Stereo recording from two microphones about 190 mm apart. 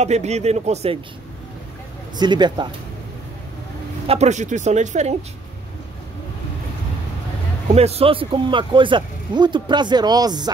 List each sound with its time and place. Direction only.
0.0 s speech: 35° right (ahead or behind)
2.1 s speech: 25° right (ahead or behind)
4.1 s speech: 35° right (ahead or behind)
7.6 s speech: 35° right (ahead or behind)